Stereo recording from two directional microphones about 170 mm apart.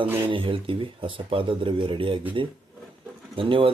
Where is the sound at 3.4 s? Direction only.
30° right (ahead or behind).